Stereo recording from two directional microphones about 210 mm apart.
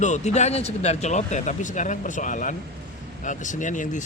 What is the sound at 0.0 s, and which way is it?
Speech, 35° left (ahead or behind).